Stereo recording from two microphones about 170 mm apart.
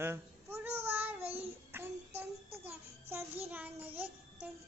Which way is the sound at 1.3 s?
10° right (ahead or behind).